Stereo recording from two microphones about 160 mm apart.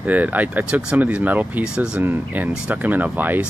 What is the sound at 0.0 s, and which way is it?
Speech, 10° right (ahead or behind).